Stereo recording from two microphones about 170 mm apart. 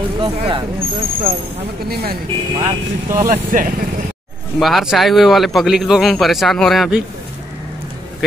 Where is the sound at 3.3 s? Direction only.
50° right (ahead or behind).